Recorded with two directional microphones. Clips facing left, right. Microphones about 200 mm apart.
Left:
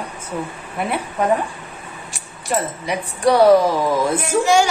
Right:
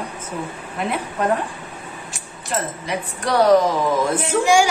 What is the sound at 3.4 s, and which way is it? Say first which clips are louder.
Speech: even; 10° left (ahead or behind).